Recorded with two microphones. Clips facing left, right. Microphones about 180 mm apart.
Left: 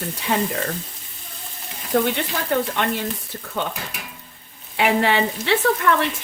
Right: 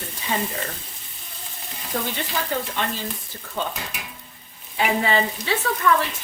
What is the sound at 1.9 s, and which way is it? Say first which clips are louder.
Speech: left 7 dB; 65° left (ahead or behind).